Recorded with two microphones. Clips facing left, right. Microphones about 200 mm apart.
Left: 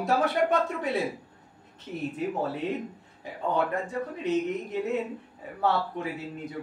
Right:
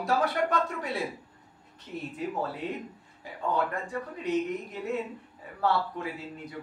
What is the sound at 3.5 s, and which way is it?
Speech, 25° left (ahead or behind).